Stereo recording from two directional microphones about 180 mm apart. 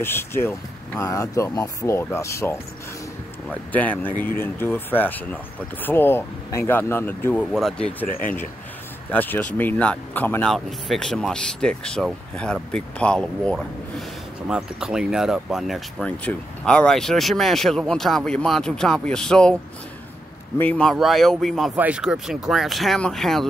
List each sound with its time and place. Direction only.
0.0 s speech: 15° left (ahead or behind)
8.1 s speech: 50° left (ahead or behind)
9.1 s speech: 10° left (ahead or behind)
20.5 s speech: 10° left (ahead or behind)